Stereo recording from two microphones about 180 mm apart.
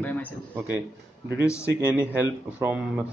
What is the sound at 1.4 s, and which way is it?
Speech, 15° left (ahead or behind).